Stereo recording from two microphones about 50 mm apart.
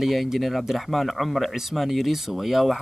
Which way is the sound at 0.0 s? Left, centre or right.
Centre.